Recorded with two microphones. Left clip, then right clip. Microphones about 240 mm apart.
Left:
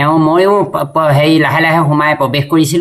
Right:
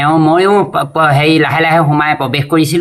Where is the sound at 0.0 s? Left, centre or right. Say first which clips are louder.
Even; centre.